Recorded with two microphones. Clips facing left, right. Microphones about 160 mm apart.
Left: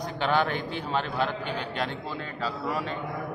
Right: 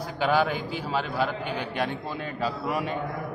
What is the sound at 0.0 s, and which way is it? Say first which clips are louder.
A man's voice: right 2 dB; 5° right (ahead or behind).